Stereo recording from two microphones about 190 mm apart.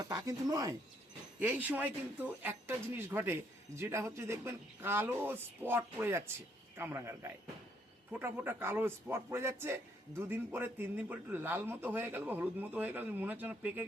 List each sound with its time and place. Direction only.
0.0 s a man's voice: 20° right (ahead or behind)